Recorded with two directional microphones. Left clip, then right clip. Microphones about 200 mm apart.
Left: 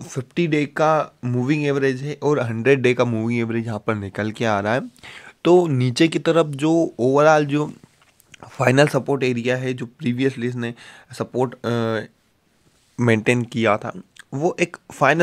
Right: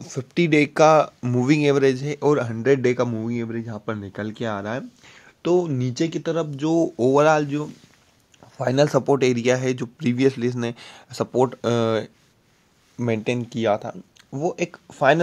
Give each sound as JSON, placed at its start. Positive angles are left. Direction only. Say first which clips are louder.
{"t": 0.0, "sound": "a sound", "louder": "left 1 dB", "side_deg": 15}
{"t": 0.3, "sound": "speech", "louder": "right 2 dB", "side_deg": 0}
{"t": 6.7, "sound": "speech", "louder": "right 3 dB", "side_deg": 5}
{"t": 7.4, "sound": "speech", "louder": "left 5 dB", "side_deg": 35}
{"t": 8.4, "sound": "a sound", "louder": "left 6 dB", "side_deg": 45}
{"t": 8.9, "sound": "speech", "louder": "right 2 dB", "side_deg": 0}
{"t": 12.9, "sound": "speech", "louder": "left 6 dB", "side_deg": 30}